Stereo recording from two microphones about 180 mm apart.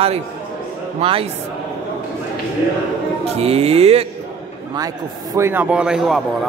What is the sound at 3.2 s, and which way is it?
Speech, 35° right (ahead or behind).